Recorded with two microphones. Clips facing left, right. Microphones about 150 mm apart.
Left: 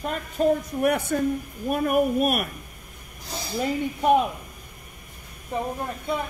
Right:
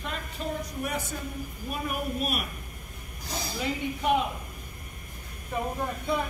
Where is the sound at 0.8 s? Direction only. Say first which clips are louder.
Left 11 dB; 65° left (ahead or behind).